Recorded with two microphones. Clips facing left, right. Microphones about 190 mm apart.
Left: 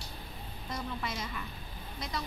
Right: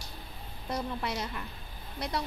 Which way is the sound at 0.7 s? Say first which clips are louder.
Right 4 dB; 65° right (ahead or behind).